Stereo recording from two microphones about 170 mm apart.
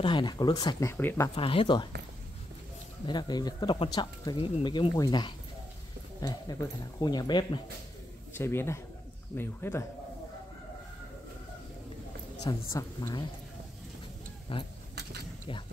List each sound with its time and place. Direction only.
0.0 s speech: 25° left (ahead or behind)
0.8 s a man's voice: 15° left (ahead or behind)
1.3 s speech: 35° left (ahead or behind)
3.1 s speech: 25° left (ahead or behind)
8.4 s a man's voice: 15° left (ahead or behind)
12.4 s speech: 20° left (ahead or behind)
14.5 s speech: 30° left (ahead or behind)